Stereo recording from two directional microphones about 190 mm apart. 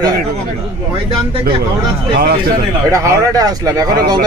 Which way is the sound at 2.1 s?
55° right (ahead or behind).